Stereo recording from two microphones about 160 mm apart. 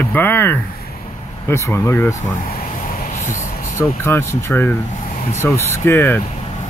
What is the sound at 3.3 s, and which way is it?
Speech, 15° left (ahead or behind).